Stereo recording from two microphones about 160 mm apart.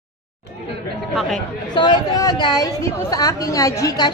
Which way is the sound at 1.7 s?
25° left (ahead or behind).